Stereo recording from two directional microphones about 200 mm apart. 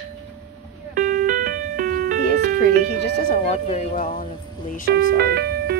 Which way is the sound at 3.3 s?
35° left (ahead or behind).